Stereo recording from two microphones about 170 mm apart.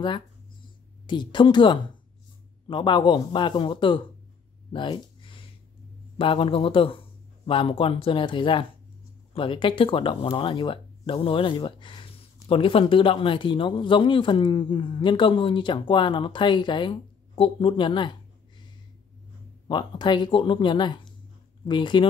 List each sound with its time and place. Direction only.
1.0 s speech: 25° left (ahead or behind)
4.7 s a sound: 25° left (ahead or behind)
6.1 s speech: 30° left (ahead or behind)
19.7 s speech: 25° left (ahead or behind)